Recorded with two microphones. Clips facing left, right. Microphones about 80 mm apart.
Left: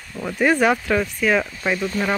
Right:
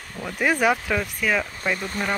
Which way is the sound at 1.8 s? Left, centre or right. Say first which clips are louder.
Left 5 dB; right.